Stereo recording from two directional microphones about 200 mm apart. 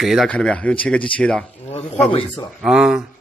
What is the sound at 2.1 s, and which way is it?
Speech, 25° left (ahead or behind).